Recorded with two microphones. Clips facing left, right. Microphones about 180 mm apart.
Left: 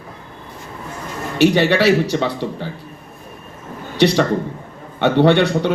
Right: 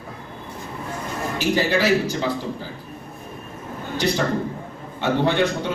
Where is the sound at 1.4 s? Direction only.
70° left (ahead or behind).